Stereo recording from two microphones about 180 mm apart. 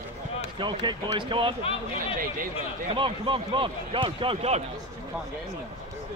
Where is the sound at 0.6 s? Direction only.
25° right (ahead or behind).